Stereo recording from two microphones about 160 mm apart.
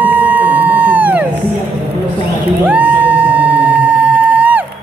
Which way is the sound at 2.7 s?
10° right (ahead or behind).